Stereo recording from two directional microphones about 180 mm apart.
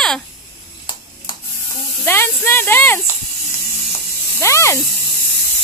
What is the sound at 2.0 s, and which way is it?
Speech, 10° left (ahead or behind).